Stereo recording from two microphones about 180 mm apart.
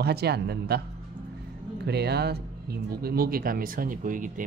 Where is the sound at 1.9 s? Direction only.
65° right (ahead or behind).